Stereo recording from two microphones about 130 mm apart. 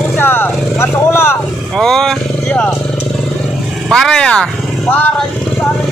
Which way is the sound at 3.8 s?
5° left (ahead or behind).